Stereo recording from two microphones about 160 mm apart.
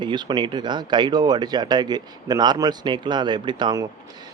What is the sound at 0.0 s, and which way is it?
Speech, 30° right (ahead or behind).